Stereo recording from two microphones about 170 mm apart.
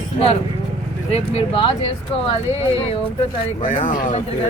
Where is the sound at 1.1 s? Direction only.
35° left (ahead or behind).